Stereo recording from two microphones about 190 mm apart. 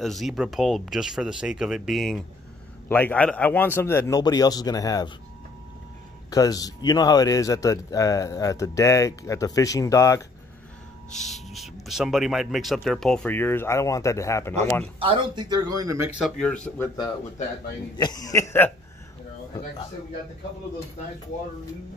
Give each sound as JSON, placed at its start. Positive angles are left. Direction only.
{"t": 0.0, "sound": "speech", "side_deg": 0}
{"t": 6.3, "sound": "speech", "side_deg": 20}
{"t": 11.1, "sound": "speech", "side_deg": 0}
{"t": 15.0, "sound": "speech", "side_deg": -25}
{"t": 16.2, "sound": "speech", "side_deg": 5}